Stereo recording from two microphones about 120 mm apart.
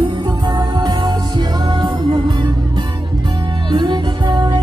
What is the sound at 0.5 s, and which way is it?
Music, 35° right (ahead or behind).